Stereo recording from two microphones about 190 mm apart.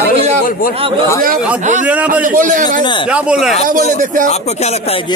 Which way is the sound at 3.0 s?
5° right (ahead or behind).